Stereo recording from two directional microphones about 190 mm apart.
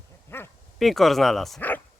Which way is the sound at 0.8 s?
Centre (ahead or behind).